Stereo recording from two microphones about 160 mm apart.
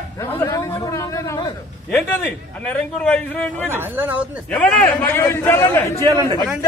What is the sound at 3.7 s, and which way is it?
Speech, 10° right (ahead or behind).